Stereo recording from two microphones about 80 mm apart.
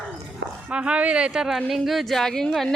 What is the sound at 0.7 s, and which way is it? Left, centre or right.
Speech, centre.